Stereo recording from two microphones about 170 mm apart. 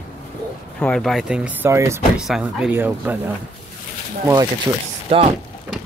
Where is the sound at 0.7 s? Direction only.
5° left (ahead or behind); by 2.0 s 15° right (ahead or behind).